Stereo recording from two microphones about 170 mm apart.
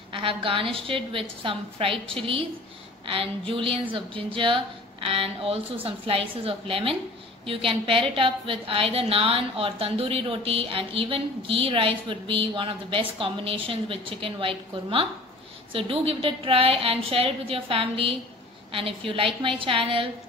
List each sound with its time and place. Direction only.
0.1 s a woman's voice: 30° right (ahead or behind)